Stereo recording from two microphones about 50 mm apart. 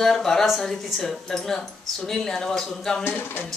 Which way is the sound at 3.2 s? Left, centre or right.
Left.